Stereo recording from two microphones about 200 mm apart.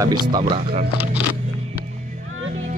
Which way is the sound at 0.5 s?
30° right (ahead or behind).